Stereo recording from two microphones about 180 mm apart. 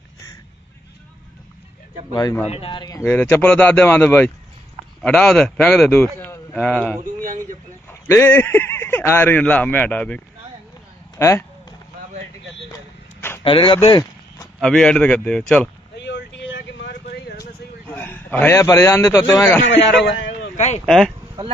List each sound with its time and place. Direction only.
2.1 s speech: 20° left (ahead or behind)
2.4 s speech: 35° left (ahead or behind)
3.1 s a man's voice: 10° left (ahead or behind)
7.2 s speech: 45° right (ahead or behind)
7.9 s speech: 15° left (ahead or behind)
13.4 s speech: 30° left (ahead or behind)
14.6 s a man's voice: 5° left (ahead or behind)
16.0 s vehicle: 75° left (ahead or behind)
17.4 s a sound: 10° left (ahead or behind)
19.6 s a man's voice: 90° left
20.5 s speech: 40° left (ahead or behind)
20.8 s a man's voice: centre (ahead or behind)